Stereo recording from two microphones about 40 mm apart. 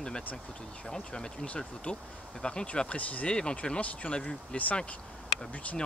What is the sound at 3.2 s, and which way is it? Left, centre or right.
Speech, left.